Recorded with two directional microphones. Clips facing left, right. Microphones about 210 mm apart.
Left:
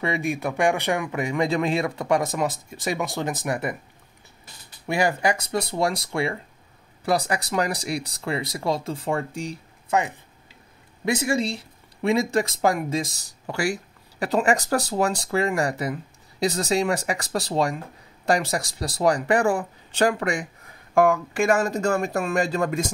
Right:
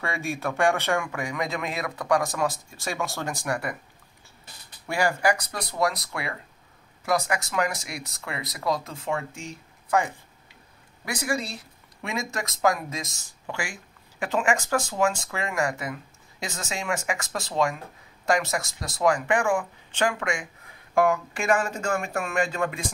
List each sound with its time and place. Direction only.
0.0 s speech: 20° left (ahead or behind)
4.8 s speech: 20° left (ahead or behind)
11.1 s speech: 25° left (ahead or behind)
20.9 s speech: 50° left (ahead or behind)